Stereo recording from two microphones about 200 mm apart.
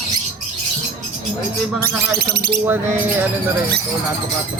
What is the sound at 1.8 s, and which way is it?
Speech, 50° right (ahead or behind).